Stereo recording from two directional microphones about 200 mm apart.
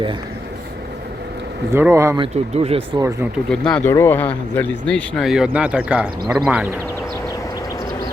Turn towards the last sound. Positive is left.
turn(degrees=-5)  # may be behind; listen again after turning